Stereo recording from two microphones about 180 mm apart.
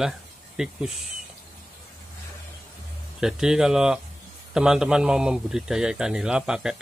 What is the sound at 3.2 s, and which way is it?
A man's voice, 5° right (ahead or behind).